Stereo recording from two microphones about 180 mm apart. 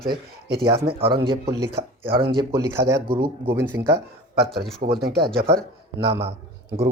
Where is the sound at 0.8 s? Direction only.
30° right (ahead or behind).